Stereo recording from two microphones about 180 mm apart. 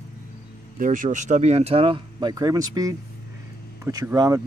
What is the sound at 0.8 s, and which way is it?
Speech, 45° right (ahead or behind).